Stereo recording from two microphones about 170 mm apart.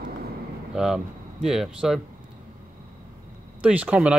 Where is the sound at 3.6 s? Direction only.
10° right (ahead or behind).